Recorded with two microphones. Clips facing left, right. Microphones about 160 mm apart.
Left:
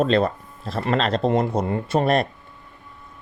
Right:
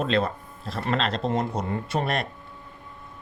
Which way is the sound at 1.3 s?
50° left (ahead or behind).